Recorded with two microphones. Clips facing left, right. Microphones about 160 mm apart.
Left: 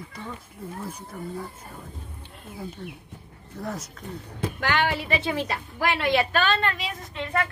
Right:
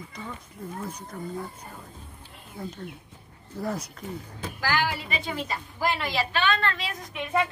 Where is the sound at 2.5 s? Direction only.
5° left (ahead or behind).